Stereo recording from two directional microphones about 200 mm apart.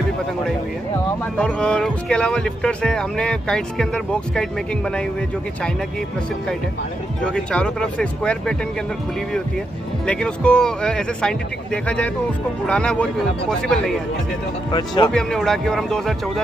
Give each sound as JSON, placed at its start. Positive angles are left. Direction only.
{"t": 1.3, "sound": "speech", "side_deg": 5}
{"t": 7.2, "sound": "speech", "side_deg": 5}
{"t": 10.0, "sound": "speech", "side_deg": 5}
{"t": 14.7, "sound": "speech", "side_deg": 20}
{"t": 15.0, "sound": "speech", "side_deg": 5}